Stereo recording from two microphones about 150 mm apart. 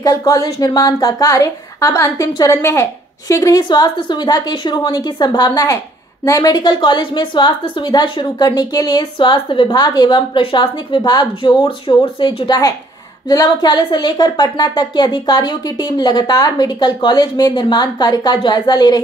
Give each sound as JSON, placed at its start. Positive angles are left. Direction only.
{"t": 0.0, "sound": "a woman's voice", "side_deg": 25}